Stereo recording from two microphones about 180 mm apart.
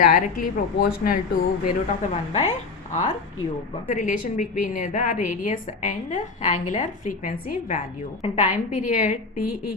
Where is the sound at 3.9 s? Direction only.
45° left (ahead or behind).